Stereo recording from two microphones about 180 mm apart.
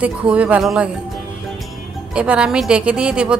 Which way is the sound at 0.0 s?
5° right (ahead or behind).